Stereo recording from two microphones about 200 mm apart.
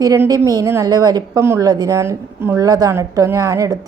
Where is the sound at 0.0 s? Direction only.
20° right (ahead or behind).